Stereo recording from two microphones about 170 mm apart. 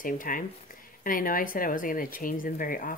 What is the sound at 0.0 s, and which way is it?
A woman's voice, 55° left (ahead or behind).